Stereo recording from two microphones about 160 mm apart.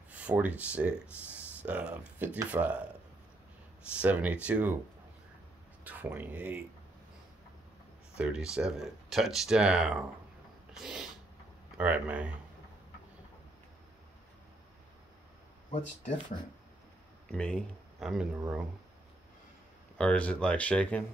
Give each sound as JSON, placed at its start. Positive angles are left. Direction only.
{"t": 0.1, "sound": "speech", "side_deg": -10}
{"t": 3.9, "sound": "speech", "side_deg": -10}
{"t": 6.0, "sound": "speech", "side_deg": -10}
{"t": 8.2, "sound": "speech", "side_deg": -5}
{"t": 10.7, "sound": "a sound", "side_deg": -5}
{"t": 11.8, "sound": "speech", "side_deg": -10}
{"t": 17.3, "sound": "speech", "side_deg": 5}
{"t": 18.3, "sound": "speech", "side_deg": -10}
{"t": 20.0, "sound": "speech", "side_deg": 5}